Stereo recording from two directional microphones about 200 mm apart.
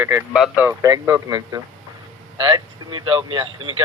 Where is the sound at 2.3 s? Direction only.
20° right (ahead or behind).